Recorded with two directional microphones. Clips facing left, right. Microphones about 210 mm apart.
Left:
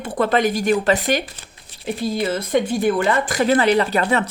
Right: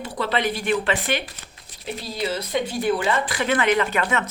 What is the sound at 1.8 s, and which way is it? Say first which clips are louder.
A woman's voice: left 6 dB; 50° left (ahead or behind).